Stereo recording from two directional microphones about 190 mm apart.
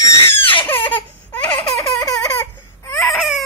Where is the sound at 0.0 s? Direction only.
25° left (ahead or behind).